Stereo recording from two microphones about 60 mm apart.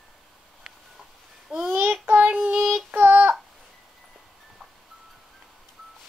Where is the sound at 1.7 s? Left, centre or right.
Right.